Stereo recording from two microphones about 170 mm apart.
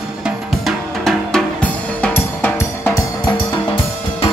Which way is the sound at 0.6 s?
Centre (ahead or behind).